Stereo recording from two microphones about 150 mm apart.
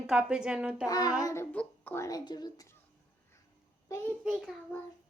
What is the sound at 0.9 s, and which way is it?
Speech, 25° left (ahead or behind).